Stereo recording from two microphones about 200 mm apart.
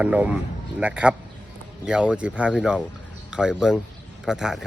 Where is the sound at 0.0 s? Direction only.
5° right (ahead or behind).